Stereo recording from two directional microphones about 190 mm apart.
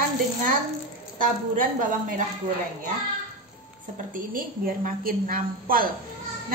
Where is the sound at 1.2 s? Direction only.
45° right (ahead or behind).